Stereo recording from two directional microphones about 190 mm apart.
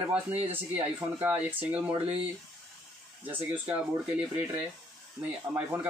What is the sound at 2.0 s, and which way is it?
Speech, 30° right (ahead or behind).